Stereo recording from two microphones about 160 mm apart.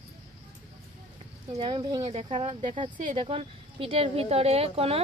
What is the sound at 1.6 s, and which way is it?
A woman's voice, 30° right (ahead or behind).